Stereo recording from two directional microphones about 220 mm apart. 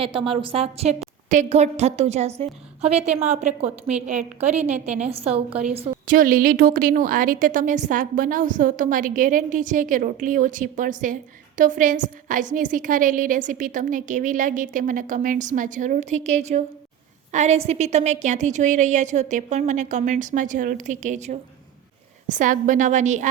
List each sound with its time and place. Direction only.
0.0 s a woman's voice: 25° right (ahead or behind)
4.6 s a woman's voice: 5° right (ahead or behind)
4.9 s a woman's voice: 25° right (ahead or behind)
6.1 s a woman's voice: 40° right (ahead or behind)